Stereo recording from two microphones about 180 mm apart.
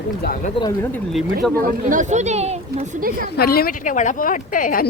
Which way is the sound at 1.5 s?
50° right (ahead or behind).